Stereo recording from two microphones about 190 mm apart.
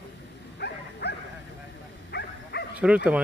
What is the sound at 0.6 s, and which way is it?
Dog, 60° left (ahead or behind).